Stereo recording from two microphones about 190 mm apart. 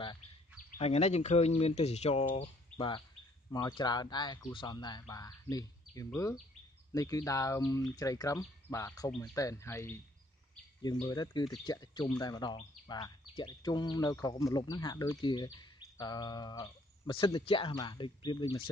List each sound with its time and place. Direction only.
0.7 s speech: 30° left (ahead or behind); by 10.0 s 15° left (ahead or behind)
11.1 s speech: 20° left (ahead or behind)